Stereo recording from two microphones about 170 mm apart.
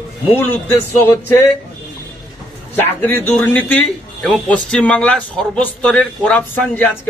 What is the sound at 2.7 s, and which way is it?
Speech, 10° left (ahead or behind).